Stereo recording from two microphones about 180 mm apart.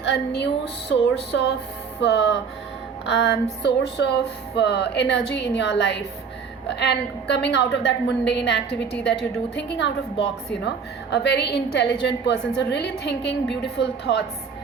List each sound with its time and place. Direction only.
0.0 s music: 70° left (ahead or behind)